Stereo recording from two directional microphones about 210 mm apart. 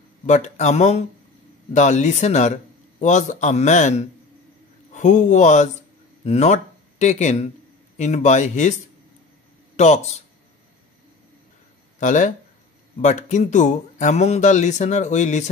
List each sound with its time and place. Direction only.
0.3 s speech: 35° left (ahead or behind)
9.8 s speech: 35° left (ahead or behind)
12.0 s speech: 35° left (ahead or behind)